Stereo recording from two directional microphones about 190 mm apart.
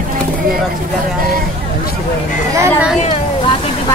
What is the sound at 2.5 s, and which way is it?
Speech, 15° right (ahead or behind).